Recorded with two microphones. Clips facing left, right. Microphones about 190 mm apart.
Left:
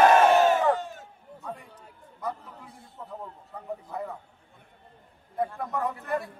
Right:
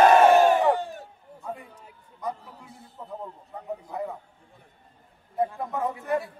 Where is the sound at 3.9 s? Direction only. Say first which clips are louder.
Right 3 dB; centre (ahead or behind).